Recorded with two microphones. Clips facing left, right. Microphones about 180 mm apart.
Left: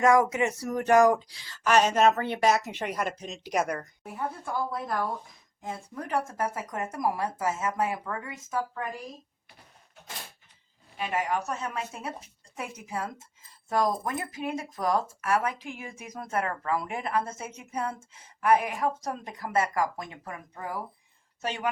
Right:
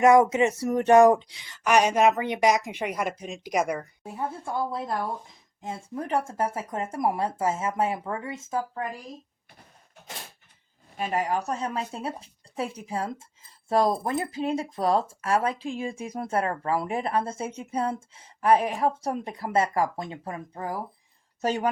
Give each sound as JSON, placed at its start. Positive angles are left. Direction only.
{"t": 0.0, "sound": "speech", "side_deg": -25}
{"t": 4.0, "sound": "speech", "side_deg": -25}
{"t": 10.9, "sound": "speech", "side_deg": -40}